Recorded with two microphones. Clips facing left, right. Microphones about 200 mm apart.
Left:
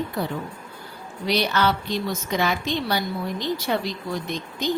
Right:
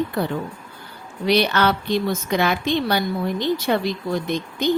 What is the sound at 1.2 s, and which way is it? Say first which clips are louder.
A woman's voice: right 4 dB; 60° right (ahead or behind).